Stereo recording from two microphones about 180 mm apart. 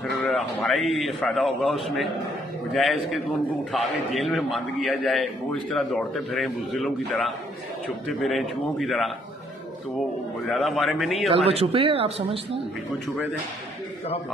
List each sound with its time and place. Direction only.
0.2 s a man's voice: centre (ahead or behind)
10.5 s a man's voice: centre (ahead or behind)
11.2 s speech: 35° right (ahead or behind)